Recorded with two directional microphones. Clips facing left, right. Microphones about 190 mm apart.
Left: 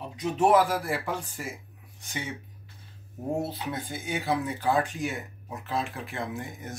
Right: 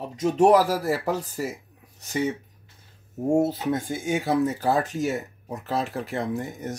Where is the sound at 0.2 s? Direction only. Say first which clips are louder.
Right 4 dB; 40° right (ahead or behind).